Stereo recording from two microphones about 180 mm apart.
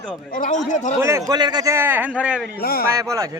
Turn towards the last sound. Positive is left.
turn(degrees=-15)  # may be behind; listen again after turning